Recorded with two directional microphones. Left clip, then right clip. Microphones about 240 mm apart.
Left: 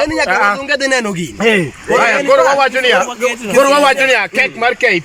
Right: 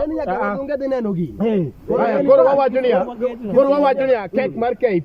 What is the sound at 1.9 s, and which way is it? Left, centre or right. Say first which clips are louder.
Speech: left 7 dB; left.